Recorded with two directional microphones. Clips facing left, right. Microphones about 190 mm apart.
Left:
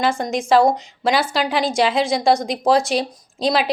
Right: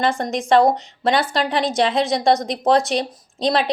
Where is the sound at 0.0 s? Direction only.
Centre (ahead or behind).